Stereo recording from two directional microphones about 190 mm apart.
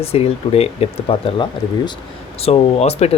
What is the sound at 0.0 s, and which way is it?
Speech, 30° left (ahead or behind).